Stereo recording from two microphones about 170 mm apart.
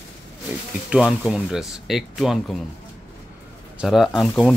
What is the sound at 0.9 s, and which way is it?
Speech, 5° right (ahead or behind).